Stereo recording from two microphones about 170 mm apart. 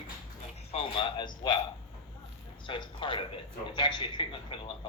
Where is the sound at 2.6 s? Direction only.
30° left (ahead or behind).